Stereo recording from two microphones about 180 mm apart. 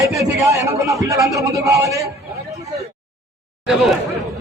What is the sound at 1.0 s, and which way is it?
A man's voice, 15° right (ahead or behind).